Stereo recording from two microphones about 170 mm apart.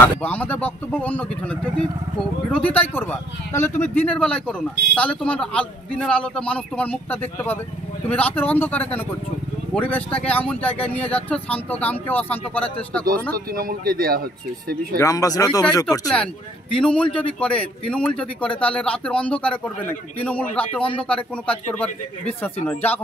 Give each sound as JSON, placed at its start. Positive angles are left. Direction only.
{"t": 0.0, "sound": "speech", "side_deg": 10}
{"t": 13.5, "sound": "speech", "side_deg": -60}
{"t": 15.0, "sound": "speech", "side_deg": 20}
{"t": 16.7, "sound": "speech", "side_deg": 5}